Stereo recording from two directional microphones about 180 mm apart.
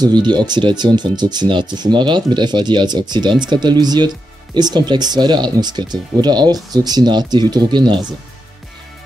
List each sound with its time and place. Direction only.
0.0 s speech: 25° right (ahead or behind)